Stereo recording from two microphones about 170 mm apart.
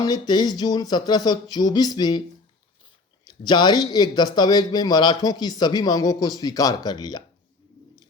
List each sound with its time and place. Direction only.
0.0 s speech: 25° left (ahead or behind)
3.2 s speech: 25° left (ahead or behind)